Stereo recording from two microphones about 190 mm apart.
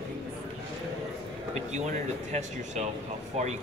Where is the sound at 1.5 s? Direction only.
35° right (ahead or behind).